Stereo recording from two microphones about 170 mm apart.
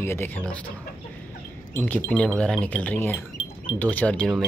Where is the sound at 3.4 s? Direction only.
35° left (ahead or behind).